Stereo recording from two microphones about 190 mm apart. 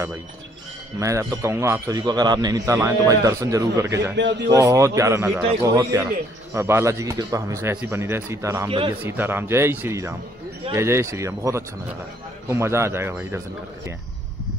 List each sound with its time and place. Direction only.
0.9 s a man's voice: 15° right (ahead or behind)
4.2 s a man's voice: 70° right (ahead or behind)
4.5 s a man's voice: 15° right (ahead or behind)
8.6 s a man's voice: 25° right (ahead or behind)
9.0 s a man's voice: 10° right (ahead or behind)